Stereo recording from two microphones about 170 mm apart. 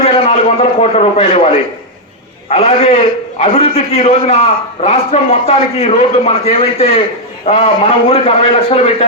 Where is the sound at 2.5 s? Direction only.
40° left (ahead or behind).